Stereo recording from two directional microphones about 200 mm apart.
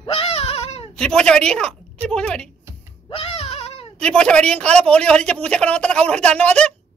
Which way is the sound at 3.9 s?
5° left (ahead or behind).